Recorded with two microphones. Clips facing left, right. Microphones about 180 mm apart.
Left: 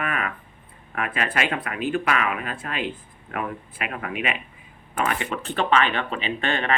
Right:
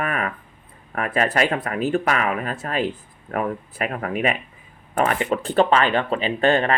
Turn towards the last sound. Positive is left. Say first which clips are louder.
# right 7 dB
turn(degrees=-40)  # may be behind; listen again after turning